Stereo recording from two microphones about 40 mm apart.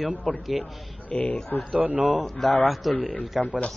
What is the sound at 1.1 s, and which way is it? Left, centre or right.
Speech, left.